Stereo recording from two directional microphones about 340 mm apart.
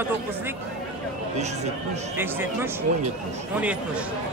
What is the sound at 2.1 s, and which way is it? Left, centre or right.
A man's voice, centre.